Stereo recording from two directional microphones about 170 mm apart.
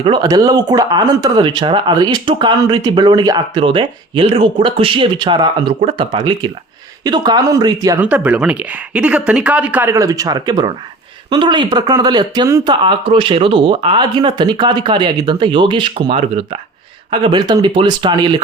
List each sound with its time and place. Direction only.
0.0 s speech: 25° right (ahead or behind)
8.0 s speech: 10° right (ahead or behind); by 18.3 s 25° right (ahead or behind)